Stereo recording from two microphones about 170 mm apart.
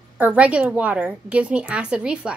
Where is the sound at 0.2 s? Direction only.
10° right (ahead or behind).